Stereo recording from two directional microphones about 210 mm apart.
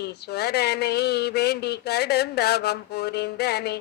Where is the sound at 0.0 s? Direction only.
50° left (ahead or behind).